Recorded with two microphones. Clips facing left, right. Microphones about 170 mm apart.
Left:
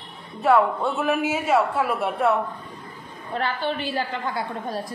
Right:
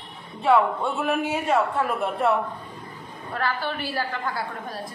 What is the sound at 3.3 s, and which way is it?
A woman's voice, 25° left (ahead or behind).